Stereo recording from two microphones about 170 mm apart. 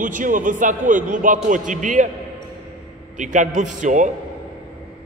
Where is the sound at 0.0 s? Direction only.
50° right (ahead or behind).